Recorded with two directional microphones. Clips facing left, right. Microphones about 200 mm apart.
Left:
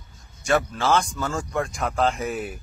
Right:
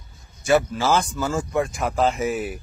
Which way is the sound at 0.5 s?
5° right (ahead or behind).